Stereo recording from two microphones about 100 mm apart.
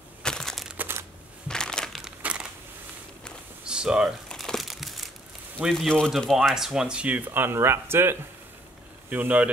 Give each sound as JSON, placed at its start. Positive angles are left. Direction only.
{"t": 0.2, "sound": "crumpling", "side_deg": 5}
{"t": 0.7, "sound": "crumpling", "side_deg": -20}
{"t": 1.5, "sound": "crumpling", "side_deg": 5}
{"t": 3.6, "sound": "a sound", "side_deg": -10}
{"t": 4.3, "sound": "crumpling", "side_deg": 5}
{"t": 5.6, "sound": "speech", "side_deg": 0}